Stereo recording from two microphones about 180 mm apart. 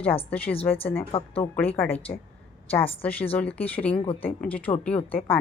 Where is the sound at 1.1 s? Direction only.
30° left (ahead or behind).